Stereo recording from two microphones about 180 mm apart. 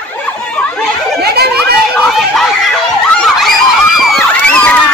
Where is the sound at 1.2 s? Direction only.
60° right (ahead or behind).